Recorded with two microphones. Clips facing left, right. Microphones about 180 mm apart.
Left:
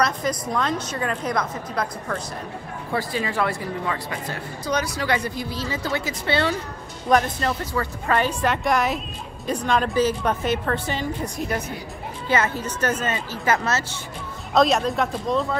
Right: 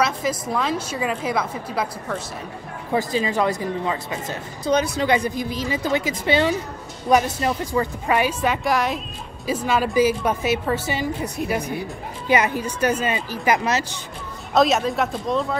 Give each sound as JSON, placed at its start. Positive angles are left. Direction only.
{"t": 0.0, "sound": "a woman's voice", "side_deg": -5}
{"t": 2.9, "sound": "a woman's voice", "side_deg": -20}
{"t": 14.5, "sound": "speech", "side_deg": 0}